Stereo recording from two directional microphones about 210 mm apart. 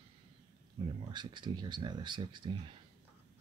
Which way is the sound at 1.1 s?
20° right (ahead or behind).